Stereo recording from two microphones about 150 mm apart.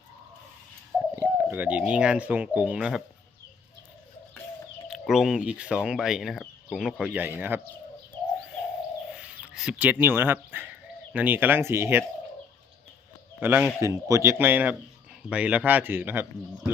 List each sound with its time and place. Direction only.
0.9 s speech: 15° right (ahead or behind)
4.9 s speech: 5° right (ahead or behind)
9.0 s speech: 5° right (ahead or behind)
13.4 s speech: 15° right (ahead or behind)